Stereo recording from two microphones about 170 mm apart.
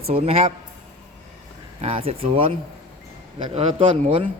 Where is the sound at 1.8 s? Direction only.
35° right (ahead or behind).